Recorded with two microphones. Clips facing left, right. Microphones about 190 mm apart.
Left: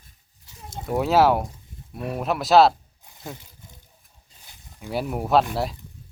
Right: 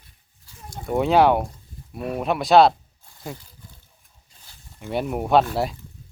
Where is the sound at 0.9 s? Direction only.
Centre (ahead or behind).